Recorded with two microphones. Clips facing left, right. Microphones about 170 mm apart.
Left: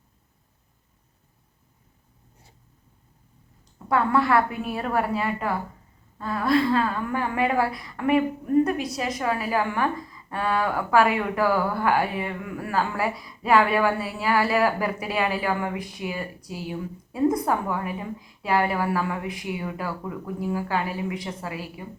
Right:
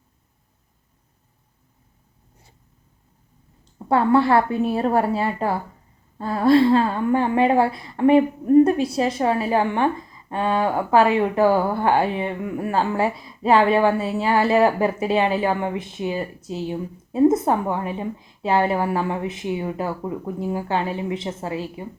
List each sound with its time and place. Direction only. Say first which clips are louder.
3.8 s a woman's voice: right 5 dB; 30° right (ahead or behind)